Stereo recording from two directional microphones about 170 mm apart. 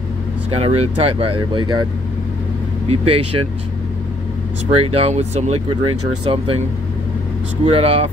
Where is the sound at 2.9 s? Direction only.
35° right (ahead or behind).